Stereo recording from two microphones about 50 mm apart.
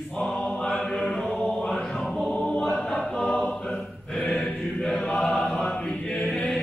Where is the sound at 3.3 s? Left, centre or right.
Centre.